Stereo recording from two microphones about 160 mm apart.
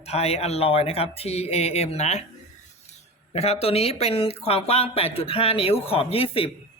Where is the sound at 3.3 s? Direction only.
40° left (ahead or behind).